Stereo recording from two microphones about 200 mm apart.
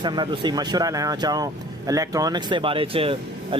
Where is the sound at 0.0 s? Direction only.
20° right (ahead or behind).